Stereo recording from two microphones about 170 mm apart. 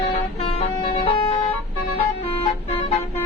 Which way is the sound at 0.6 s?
35° left (ahead or behind).